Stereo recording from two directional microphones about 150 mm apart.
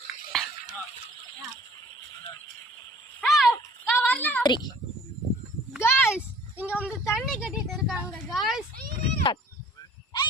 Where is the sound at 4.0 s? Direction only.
10° left (ahead or behind).